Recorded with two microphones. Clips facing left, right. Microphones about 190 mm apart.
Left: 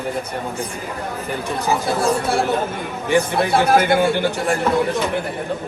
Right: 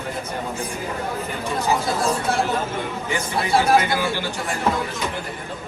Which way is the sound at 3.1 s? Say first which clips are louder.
Left 6 dB; 60° left (ahead or behind).